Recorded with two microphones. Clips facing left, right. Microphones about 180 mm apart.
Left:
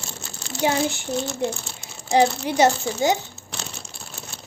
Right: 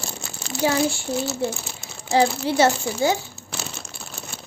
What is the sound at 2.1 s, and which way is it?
Speech, 15° left (ahead or behind).